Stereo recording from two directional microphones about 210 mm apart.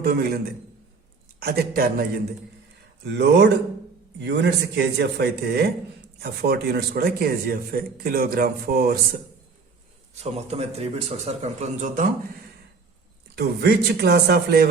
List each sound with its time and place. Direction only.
0.0 s a man's voice: 50° right (ahead or behind)
1.4 s a man's voice: 45° right (ahead or behind)
10.2 s speech: 30° right (ahead or behind)
13.3 s a man's voice: 50° right (ahead or behind)